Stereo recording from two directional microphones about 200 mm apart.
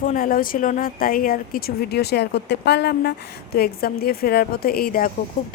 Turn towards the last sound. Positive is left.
turn(degrees=40)  # may be behind; listen again after turning